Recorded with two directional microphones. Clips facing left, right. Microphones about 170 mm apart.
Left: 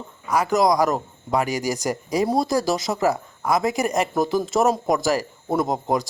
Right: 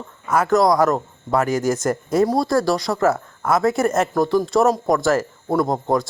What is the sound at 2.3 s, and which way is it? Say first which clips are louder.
Speech: right 2 dB; 20° left (ahead or behind).